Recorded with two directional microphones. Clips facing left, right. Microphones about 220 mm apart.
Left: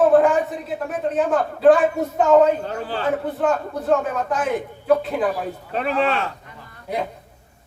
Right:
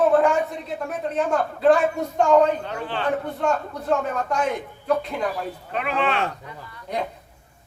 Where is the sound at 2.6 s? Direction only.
40° left (ahead or behind).